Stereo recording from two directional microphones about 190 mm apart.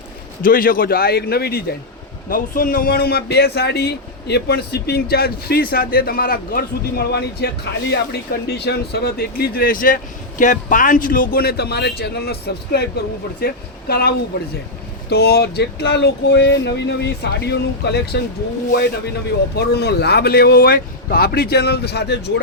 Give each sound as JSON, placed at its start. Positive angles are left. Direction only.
{"t": 0.4, "sound": "a man's voice", "side_deg": 50}
{"t": 15.1, "sound": "a man's voice", "side_deg": 55}
{"t": 19.5, "sound": "a man's voice", "side_deg": 60}